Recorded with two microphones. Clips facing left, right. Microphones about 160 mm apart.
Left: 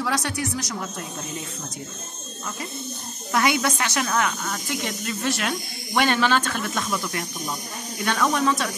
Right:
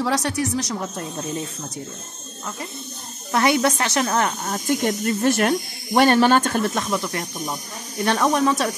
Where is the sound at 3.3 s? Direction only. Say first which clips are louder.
Right 3 dB; 35° right (ahead or behind).